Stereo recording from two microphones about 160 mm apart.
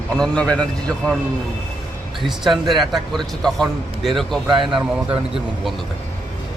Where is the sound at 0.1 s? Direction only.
5° left (ahead or behind).